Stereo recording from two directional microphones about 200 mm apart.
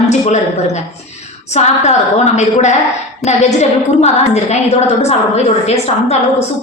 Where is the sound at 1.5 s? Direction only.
35° left (ahead or behind).